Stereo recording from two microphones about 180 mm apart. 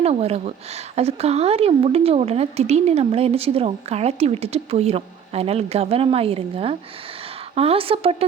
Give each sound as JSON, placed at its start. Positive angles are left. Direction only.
{"t": 0.0, "sound": "a woman's voice", "side_deg": -35}